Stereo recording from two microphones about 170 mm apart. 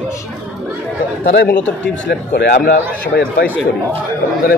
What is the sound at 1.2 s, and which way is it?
A man's voice, 90° left.